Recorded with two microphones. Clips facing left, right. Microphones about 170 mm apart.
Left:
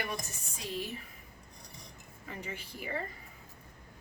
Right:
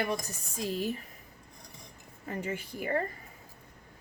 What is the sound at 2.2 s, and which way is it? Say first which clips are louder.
Speech: right 7 dB; 45° right (ahead or behind).